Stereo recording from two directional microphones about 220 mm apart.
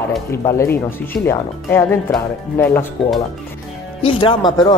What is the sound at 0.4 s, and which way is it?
Speech, 15° left (ahead or behind).